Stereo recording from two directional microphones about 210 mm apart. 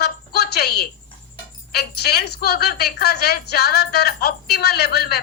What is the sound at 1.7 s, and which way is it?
A woman's voice, 50° left (ahead or behind).